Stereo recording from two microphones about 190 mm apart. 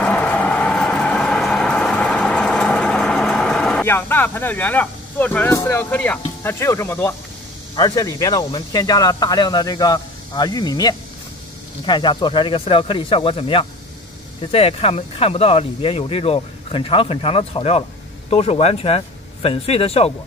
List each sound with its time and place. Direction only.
0.0 s vehicle: 5° left (ahead or behind)
7.7 s speech: 20° left (ahead or behind)